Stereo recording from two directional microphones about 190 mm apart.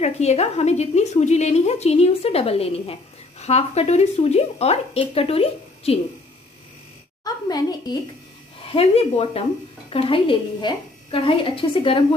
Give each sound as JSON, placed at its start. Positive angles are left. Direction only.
{"t": 0.0, "sound": "a woman's voice", "side_deg": 35}
{"t": 7.2, "sound": "a child's voice", "side_deg": 20}
{"t": 8.7, "sound": "a woman's voice", "side_deg": 30}